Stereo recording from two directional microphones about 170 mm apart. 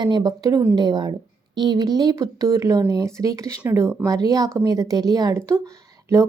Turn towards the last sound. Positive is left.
turn(degrees=-20)  # may be behind; listen again after turning